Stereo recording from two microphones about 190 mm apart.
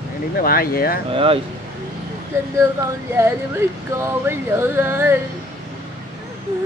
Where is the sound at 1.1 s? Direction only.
30° right (ahead or behind).